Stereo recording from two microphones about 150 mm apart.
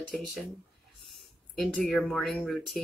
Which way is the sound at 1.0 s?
Centre (ahead or behind).